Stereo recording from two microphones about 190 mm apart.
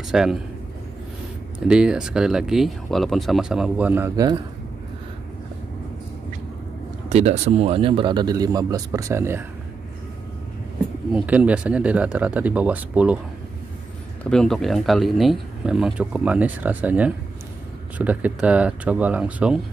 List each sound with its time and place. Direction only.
0.1 s speech: centre (ahead or behind)
1.7 s speech: 5° right (ahead or behind)
7.1 s speech: 35° right (ahead or behind); by 9.4 s 15° right (ahead or behind)
11.1 s speech: 5° right (ahead or behind)
14.3 s speech: 5° left (ahead or behind)